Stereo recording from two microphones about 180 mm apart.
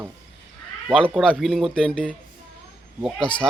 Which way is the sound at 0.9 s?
5° left (ahead or behind).